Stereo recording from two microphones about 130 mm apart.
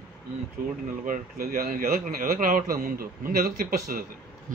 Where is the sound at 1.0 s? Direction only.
90° right.